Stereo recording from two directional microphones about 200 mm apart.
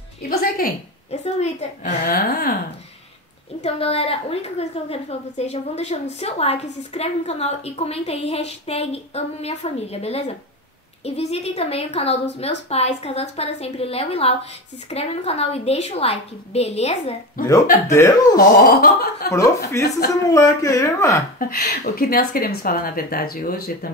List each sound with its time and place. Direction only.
1.1 s a woman's voice: 35° left (ahead or behind)
2.0 s a woman's voice: 50° left (ahead or behind)
3.6 s a woman's voice: 30° left (ahead or behind)
17.8 s speech: 15° left (ahead or behind)
18.4 s a woman's voice: 45° left (ahead or behind)
19.2 s speech: 15° left (ahead or behind)
21.4 s a woman's voice: 50° left (ahead or behind)